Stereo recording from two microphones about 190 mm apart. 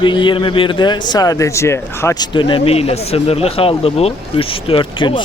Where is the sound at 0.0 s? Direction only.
25° left (ahead or behind).